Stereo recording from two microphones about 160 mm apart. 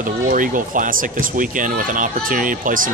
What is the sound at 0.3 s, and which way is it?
Speech, 55° right (ahead or behind).